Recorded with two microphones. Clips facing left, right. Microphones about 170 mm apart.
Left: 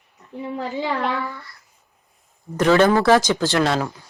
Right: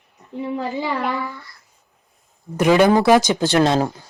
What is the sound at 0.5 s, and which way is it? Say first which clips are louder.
Speech: even; 10° right (ahead or behind).